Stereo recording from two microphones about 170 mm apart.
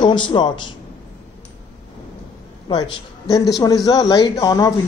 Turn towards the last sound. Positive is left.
turn(degrees=20)  # may be behind; listen again after turning